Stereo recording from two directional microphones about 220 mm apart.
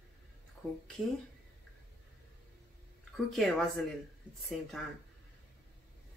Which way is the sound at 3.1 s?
Centre (ahead or behind).